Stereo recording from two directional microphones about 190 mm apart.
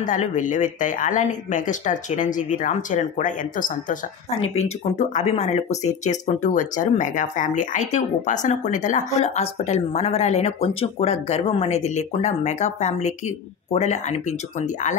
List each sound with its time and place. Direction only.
0.0 s speech: 40° left (ahead or behind)